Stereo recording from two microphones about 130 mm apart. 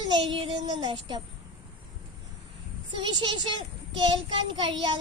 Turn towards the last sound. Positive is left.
turn(degrees=-40)  # may be behind; listen again after turning